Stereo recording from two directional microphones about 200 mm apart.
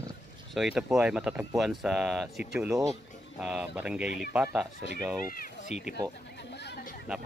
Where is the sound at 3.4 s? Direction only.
5° right (ahead or behind).